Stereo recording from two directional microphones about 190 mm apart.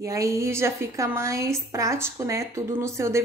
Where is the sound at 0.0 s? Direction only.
15° right (ahead or behind).